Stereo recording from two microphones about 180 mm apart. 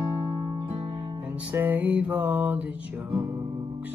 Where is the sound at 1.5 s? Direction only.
10° right (ahead or behind).